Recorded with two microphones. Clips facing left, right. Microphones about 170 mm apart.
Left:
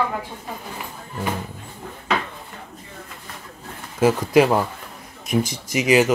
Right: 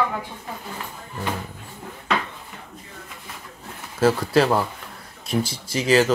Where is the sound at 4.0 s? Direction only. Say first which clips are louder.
Left 2 dB; 15° left (ahead or behind).